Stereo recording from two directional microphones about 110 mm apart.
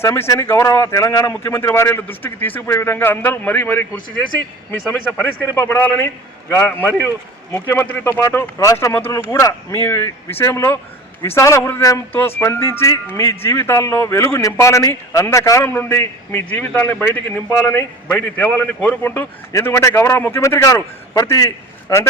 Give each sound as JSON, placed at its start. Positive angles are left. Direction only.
{"t": 0.0, "sound": "speech", "side_deg": 25}
{"t": 5.1, "sound": "a man's voice", "side_deg": 15}